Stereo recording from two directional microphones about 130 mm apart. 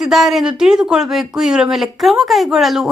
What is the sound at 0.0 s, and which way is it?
A woman's voice, 5° right (ahead or behind).